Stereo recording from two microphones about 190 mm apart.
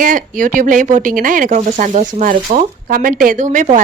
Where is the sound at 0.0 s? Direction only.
45° right (ahead or behind).